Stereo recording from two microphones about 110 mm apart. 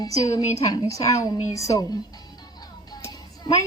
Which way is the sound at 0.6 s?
30° left (ahead or behind).